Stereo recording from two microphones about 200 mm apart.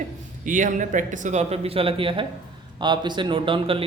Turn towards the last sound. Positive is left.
turn(degrees=-25)  # may be behind; listen again after turning